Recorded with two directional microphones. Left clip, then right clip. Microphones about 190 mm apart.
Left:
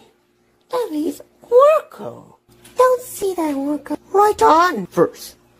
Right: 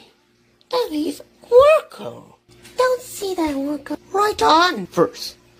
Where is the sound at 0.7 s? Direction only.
15° left (ahead or behind).